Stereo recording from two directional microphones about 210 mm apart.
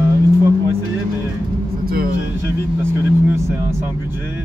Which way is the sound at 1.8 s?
45° right (ahead or behind).